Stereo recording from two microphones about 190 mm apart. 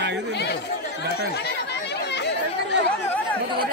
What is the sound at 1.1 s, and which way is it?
Chatter, 60° left (ahead or behind).